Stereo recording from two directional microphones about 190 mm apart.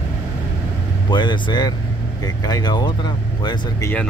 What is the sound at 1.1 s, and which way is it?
Speech, 25° left (ahead or behind).